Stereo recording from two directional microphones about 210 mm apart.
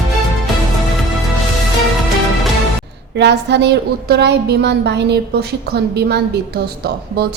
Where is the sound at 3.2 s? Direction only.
55° right (ahead or behind).